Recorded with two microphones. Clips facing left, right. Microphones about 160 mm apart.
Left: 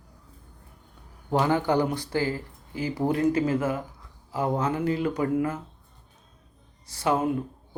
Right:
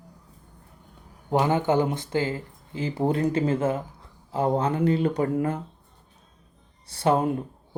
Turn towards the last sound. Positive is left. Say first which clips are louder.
# right 3 dB
turn(degrees=-30)  # may be behind; listen again after turning